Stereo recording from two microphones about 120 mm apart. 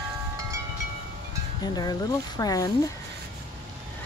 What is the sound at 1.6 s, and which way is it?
Speech, 35° left (ahead or behind).